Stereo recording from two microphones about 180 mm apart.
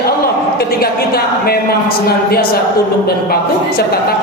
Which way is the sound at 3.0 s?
60° left (ahead or behind).